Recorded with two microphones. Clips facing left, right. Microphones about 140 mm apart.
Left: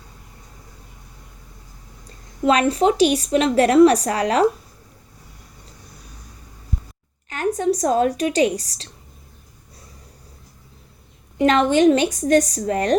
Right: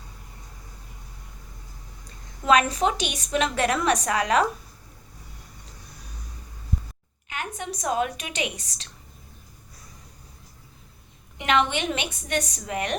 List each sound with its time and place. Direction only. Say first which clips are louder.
2.5 s a woman's voice: left 4 dB; 30° left (ahead or behind)
7.3 s a woman's voice: left 13 dB; 40° left (ahead or behind)
11.3 s a woman's voice: left 8 dB; 40° left (ahead or behind)